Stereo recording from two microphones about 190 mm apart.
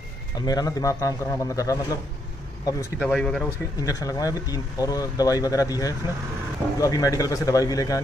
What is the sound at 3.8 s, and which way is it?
A man's voice, 20° left (ahead or behind).